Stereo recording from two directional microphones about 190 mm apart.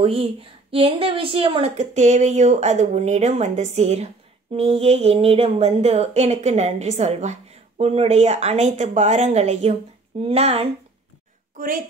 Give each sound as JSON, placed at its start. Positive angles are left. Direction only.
{"t": 0.0, "sound": "speech", "side_deg": -30}
{"t": 11.5, "sound": "a woman's voice", "side_deg": -45}